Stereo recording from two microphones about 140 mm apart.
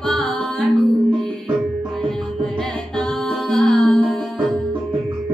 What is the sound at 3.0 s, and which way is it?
Music, centre (ahead or behind).